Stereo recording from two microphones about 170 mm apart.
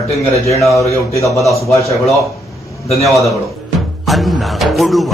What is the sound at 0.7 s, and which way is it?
Speech, 20° left (ahead or behind).